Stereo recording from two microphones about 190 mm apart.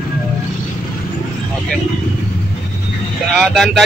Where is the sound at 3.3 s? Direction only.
Centre (ahead or behind).